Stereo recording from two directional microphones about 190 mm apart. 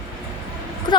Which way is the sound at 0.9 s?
25° left (ahead or behind).